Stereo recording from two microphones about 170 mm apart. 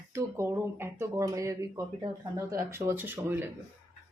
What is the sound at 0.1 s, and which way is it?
A woman's voice, 15° right (ahead or behind).